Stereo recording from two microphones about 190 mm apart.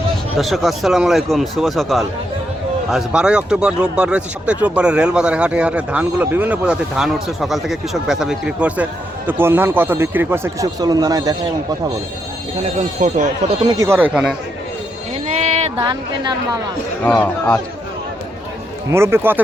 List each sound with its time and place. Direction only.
0.3 s speech: centre (ahead or behind); by 11.3 s 20° right (ahead or behind)
13.0 s speech: 40° right (ahead or behind)
13.7 s speech: 15° right (ahead or behind)
15.8 s a woman's voice: 20° right (ahead or behind)
17.0 s speech: 5° left (ahead or behind)
18.9 s speech: 15° right (ahead or behind)